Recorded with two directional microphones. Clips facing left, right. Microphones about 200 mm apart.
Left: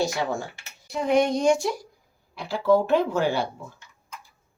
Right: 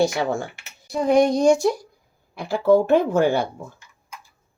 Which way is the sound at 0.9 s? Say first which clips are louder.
Right 4 dB; 40° right (ahead or behind).